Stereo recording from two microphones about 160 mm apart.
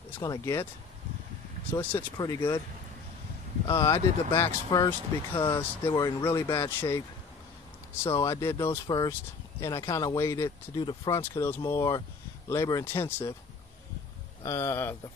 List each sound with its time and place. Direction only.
0.2 s speech: 20° left (ahead or behind)
1.7 s speech: 10° left (ahead or behind)
3.6 s speech: 20° left (ahead or behind)
5.5 s speech: 15° left (ahead or behind)
8.0 s speech: 20° left (ahead or behind)
8.8 s speech: 25° left (ahead or behind)
14.4 s speech: 15° left (ahead or behind)